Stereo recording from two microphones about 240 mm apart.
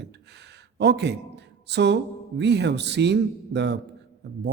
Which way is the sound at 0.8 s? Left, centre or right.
Right.